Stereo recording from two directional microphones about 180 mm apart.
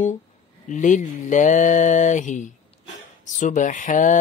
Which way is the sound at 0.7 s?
45° left (ahead or behind).